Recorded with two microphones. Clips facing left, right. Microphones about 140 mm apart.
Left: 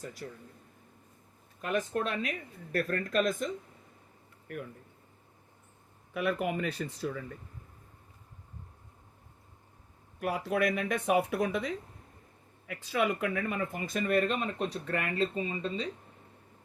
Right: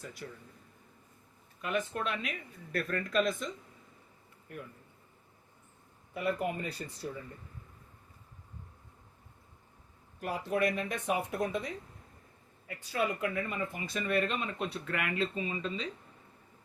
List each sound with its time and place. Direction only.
0.0 s speech: 40° left (ahead or behind)
1.6 s speech: 40° left (ahead or behind)
6.1 s speech: 90° left
10.2 s speech: 65° left (ahead or behind)
12.6 s speech: 90° left; by 15.9 s 35° left (ahead or behind)